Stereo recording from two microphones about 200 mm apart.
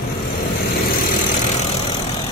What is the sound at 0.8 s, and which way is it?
Vehicle, 35° left (ahead or behind).